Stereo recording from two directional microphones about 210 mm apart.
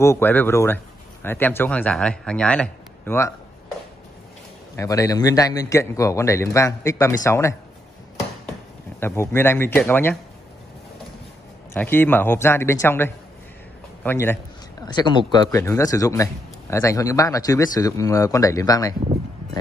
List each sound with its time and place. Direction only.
0.0 s a man's voice: 10° left (ahead or behind)
4.7 s a man's voice: 15° left (ahead or behind)
9.0 s a man's voice: 10° left (ahead or behind)
11.7 s a man's voice: 10° left (ahead or behind)
14.0 s a sound: 10° left (ahead or behind)
14.9 s a man's voice: 20° left (ahead or behind)